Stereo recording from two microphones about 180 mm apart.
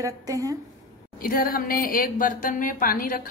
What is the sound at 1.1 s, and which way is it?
A woman's voice, 55° left (ahead or behind).